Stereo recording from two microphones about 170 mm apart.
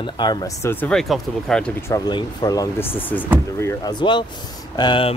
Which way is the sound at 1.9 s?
25° left (ahead or behind).